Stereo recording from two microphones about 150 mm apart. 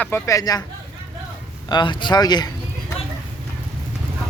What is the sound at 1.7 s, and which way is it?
Speech, 30° left (ahead or behind).